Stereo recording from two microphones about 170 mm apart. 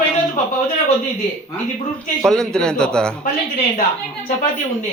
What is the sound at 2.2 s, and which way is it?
Speech, 5° left (ahead or behind).